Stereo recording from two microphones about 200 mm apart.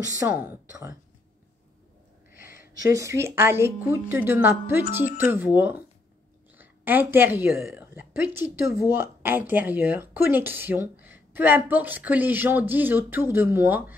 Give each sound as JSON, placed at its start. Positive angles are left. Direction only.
{"t": 0.2, "sound": "speech", "side_deg": -15}
{"t": 2.4, "sound": "a sound", "side_deg": 45}
{"t": 2.9, "sound": "a woman's voice", "side_deg": -15}